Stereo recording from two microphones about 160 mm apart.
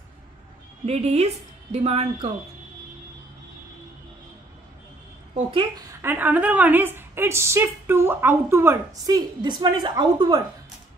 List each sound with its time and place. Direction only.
0.8 s a woman's voice: 40° right (ahead or behind)
5.3 s a woman's voice: 35° right (ahead or behind)
6.0 s a woman's voice: 10° right (ahead or behind); by 10.4 s 30° right (ahead or behind)